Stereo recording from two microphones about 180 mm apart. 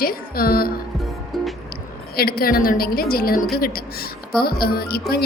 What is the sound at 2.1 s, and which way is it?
A woman's voice, 55° left (ahead or behind).